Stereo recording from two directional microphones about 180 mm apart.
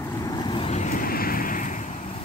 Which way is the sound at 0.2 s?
20° left (ahead or behind).